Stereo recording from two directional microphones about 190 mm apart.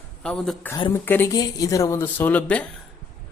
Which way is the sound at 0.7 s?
25° left (ahead or behind).